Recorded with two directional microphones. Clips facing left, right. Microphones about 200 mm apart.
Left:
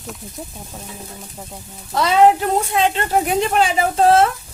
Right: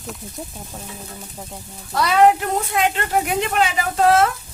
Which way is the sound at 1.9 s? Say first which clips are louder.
Left 2 dB; 25° left (ahead or behind).